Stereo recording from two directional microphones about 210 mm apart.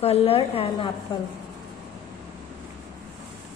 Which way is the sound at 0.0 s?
30° left (ahead or behind).